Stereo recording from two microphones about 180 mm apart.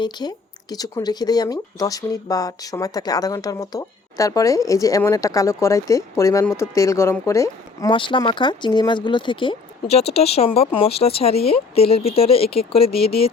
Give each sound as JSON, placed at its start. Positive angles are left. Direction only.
{"t": 0.0, "sound": "speech", "side_deg": 25}